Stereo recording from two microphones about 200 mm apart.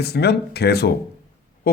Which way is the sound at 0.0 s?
55° left (ahead or behind).